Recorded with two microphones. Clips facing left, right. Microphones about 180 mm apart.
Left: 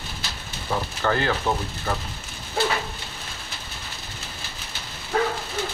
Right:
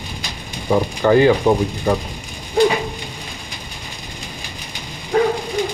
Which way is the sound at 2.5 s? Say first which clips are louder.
Right 9 dB; 15° right (ahead or behind).